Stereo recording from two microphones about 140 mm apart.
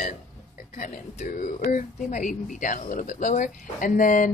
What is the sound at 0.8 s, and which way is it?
Speech, 65° left (ahead or behind).